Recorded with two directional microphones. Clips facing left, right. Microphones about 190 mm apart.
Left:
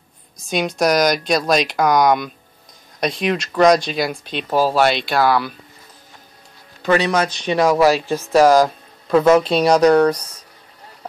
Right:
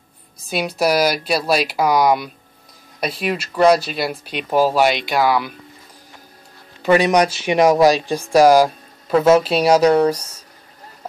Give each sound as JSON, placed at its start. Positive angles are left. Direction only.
{"t": 0.5, "sound": "speech", "side_deg": -5}
{"t": 6.9, "sound": "speech", "side_deg": -15}